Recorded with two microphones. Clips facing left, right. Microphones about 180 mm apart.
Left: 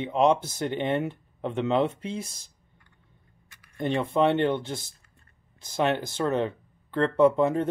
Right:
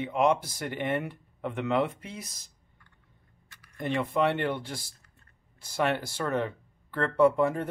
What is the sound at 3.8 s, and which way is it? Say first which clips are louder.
Speech: left 3 dB; 25° left (ahead or behind).